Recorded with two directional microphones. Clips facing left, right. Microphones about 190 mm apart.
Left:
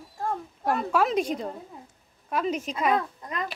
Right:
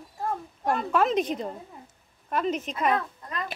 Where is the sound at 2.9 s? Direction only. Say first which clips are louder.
Left 1 dB; 15° left (ahead or behind).